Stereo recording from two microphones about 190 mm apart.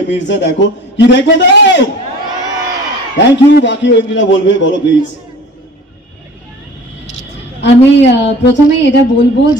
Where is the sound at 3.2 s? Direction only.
70° left (ahead or behind).